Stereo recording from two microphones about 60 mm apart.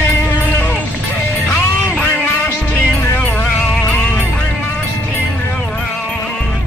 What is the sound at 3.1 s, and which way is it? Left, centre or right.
Music, left.